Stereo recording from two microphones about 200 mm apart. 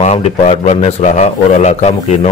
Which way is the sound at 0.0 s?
35° left (ahead or behind).